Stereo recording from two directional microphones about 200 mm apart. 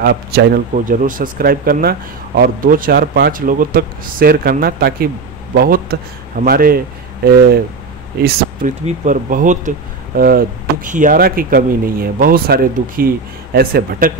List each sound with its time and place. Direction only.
0.0 s speech: 50° right (ahead or behind)
8.2 s speech: 40° right (ahead or behind)